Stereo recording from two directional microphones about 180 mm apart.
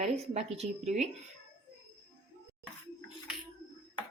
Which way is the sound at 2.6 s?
Centre (ahead or behind).